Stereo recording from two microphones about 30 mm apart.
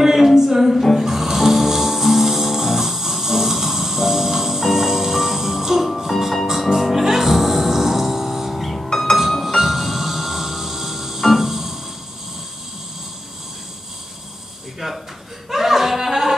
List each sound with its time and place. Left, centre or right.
0.0 s music: centre
8.8 s music: centre
9.4 s music: centre
15.5 s a sound: centre